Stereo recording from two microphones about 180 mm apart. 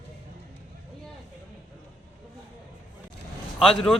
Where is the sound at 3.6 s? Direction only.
5° left (ahead or behind).